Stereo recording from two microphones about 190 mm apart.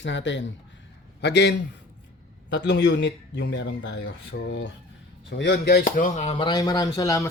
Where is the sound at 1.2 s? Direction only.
60° left (ahead or behind).